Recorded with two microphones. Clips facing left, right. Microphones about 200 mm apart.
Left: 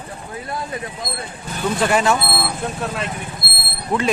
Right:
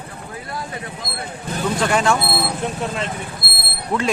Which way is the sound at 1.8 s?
5° left (ahead or behind).